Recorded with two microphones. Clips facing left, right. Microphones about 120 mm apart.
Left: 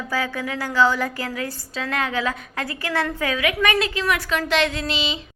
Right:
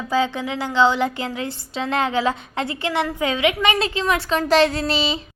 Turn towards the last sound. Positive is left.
turn(degrees=-35)  # may be behind; listen again after turning